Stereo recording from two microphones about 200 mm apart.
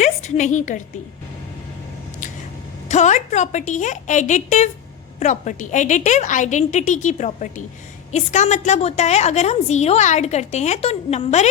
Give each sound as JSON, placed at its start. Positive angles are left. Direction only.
{"t": 0.0, "sound": "a woman's voice", "side_deg": 35}
{"t": 2.9, "sound": "a woman's voice", "side_deg": 35}